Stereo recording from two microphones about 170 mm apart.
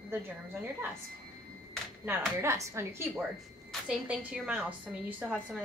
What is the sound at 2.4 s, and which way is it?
A woman's voice, 15° right (ahead or behind).